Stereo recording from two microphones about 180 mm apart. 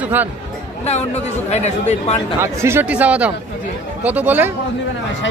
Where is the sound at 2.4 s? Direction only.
15° right (ahead or behind).